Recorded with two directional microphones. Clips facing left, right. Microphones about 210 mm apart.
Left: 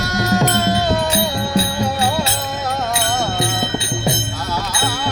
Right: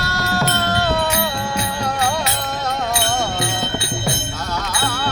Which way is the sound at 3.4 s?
20° left (ahead or behind).